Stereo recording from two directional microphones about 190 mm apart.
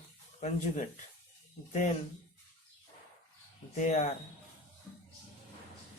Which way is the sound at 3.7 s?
40° left (ahead or behind).